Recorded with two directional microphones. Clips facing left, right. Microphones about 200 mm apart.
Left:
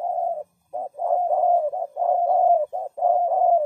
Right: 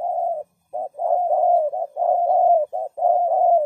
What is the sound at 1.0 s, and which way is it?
Bird, 35° right (ahead or behind).